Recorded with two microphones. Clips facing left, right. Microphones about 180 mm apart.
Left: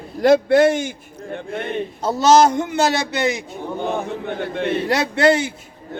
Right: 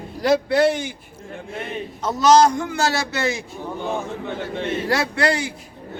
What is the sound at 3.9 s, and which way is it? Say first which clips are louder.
Speech: even; 60° left (ahead or behind).